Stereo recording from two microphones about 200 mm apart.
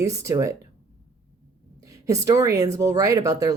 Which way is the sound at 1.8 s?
15° right (ahead or behind).